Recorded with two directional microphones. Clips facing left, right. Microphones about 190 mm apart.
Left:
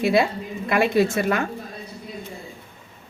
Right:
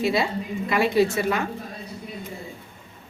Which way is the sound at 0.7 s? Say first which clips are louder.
Left 1 dB; 55° left (ahead or behind).